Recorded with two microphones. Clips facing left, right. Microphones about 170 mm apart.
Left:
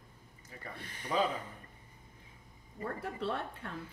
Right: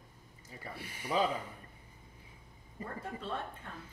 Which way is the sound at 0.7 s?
10° right (ahead or behind).